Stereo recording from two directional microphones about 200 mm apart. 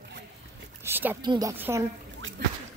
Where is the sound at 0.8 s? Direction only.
10° right (ahead or behind).